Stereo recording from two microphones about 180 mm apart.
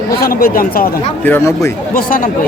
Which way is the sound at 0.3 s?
55° left (ahead or behind).